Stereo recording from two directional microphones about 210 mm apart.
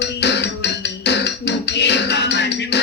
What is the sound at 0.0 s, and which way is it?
Music, 55° left (ahead or behind).